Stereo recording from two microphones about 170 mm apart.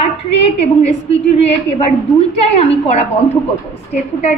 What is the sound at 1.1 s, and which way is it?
A woman's voice, 40° left (ahead or behind).